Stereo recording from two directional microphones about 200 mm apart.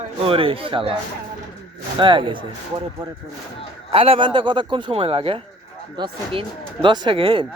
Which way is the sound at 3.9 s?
30° right (ahead or behind).